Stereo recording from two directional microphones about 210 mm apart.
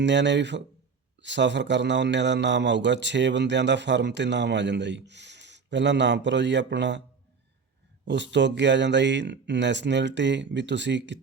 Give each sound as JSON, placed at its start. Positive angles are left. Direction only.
{"t": 0.0, "sound": "a man's voice", "side_deg": -55}
{"t": 8.0, "sound": "a man's voice", "side_deg": -55}